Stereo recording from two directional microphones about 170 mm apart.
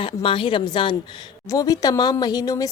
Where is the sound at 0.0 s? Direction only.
30° left (ahead or behind).